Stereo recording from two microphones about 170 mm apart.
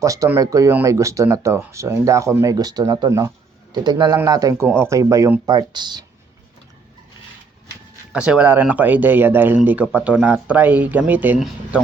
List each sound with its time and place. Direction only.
0.0 s speech: 20° right (ahead or behind)
8.1 s speech: 5° right (ahead or behind)